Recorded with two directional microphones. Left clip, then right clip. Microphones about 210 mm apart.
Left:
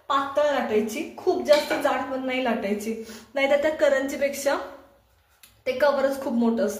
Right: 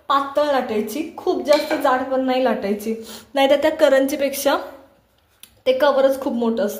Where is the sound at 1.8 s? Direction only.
30° right (ahead or behind).